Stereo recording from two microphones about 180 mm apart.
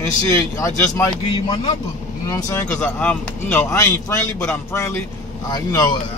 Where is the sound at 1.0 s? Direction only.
25° left (ahead or behind).